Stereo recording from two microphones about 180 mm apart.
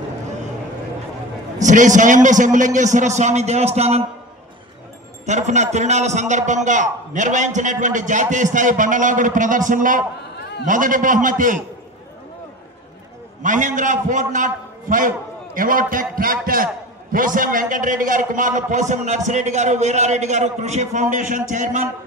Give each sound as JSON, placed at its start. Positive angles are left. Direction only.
{"t": 1.6, "sound": "a man's voice", "side_deg": -45}
{"t": 5.2, "sound": "a man's voice", "side_deg": -40}
{"t": 13.4, "sound": "a man's voice", "side_deg": -45}